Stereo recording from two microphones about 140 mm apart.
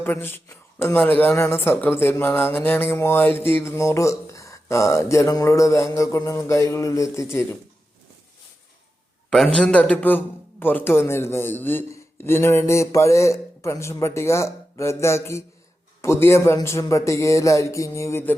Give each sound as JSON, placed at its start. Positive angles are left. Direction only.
{"t": 0.0, "sound": "speech", "side_deg": 15}
{"t": 9.3, "sound": "speech", "side_deg": 5}